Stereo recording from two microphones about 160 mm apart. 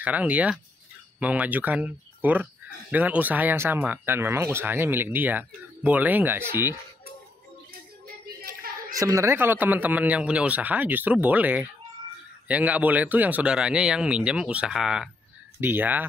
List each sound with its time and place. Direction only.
0.0 s speech: 10° right (ahead or behind)
8.4 s a sound: 65° right (ahead or behind)
8.9 s speech: 20° right (ahead or behind)